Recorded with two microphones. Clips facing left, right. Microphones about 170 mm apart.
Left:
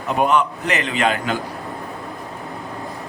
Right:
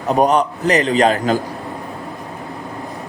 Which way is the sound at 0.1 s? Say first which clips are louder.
Right 3 dB; 40° right (ahead or behind).